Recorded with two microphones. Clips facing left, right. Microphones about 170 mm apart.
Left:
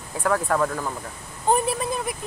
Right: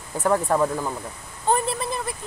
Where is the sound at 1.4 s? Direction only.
10° left (ahead or behind).